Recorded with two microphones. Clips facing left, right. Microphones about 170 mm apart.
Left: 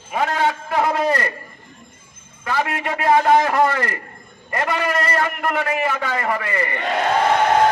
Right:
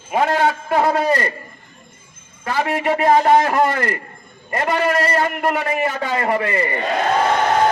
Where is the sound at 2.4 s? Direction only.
25° right (ahead or behind).